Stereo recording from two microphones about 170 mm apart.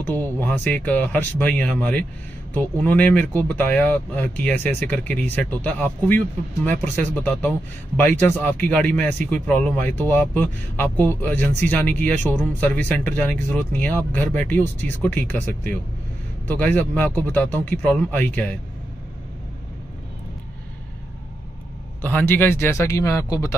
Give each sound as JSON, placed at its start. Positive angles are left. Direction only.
{"t": 0.0, "sound": "speech", "side_deg": 10}
{"t": 22.0, "sound": "speech", "side_deg": 10}